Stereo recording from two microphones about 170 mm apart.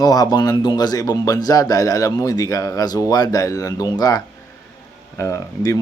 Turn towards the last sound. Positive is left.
turn(degrees=20)  # may be behind; listen again after turning